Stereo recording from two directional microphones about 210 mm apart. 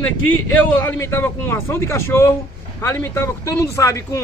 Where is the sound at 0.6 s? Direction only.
10° left (ahead or behind).